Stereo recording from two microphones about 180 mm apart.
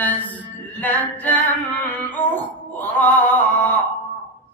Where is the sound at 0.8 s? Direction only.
10° left (ahead or behind).